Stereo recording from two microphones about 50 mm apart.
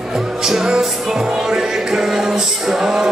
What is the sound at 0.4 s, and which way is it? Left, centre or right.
Music, centre.